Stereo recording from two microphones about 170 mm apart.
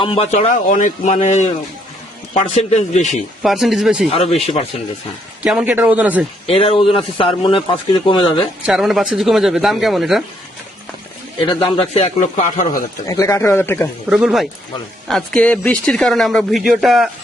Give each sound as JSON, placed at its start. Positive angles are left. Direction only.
{"t": 0.0, "sound": "a man's voice", "side_deg": 30}
{"t": 3.4, "sound": "speech", "side_deg": 0}
{"t": 4.1, "sound": "speech", "side_deg": 35}
{"t": 5.4, "sound": "a man's voice", "side_deg": -5}
{"t": 6.5, "sound": "speech", "side_deg": 35}
{"t": 8.6, "sound": "speech", "side_deg": 0}
{"t": 11.4, "sound": "speech", "side_deg": 30}
{"t": 13.1, "sound": "speech", "side_deg": 20}
{"t": 14.1, "sound": "speech", "side_deg": -5}